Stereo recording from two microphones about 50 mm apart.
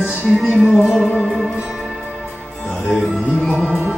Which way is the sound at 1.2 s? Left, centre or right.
Centre.